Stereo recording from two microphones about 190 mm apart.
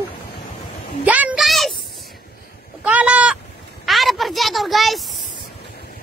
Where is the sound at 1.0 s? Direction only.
10° right (ahead or behind).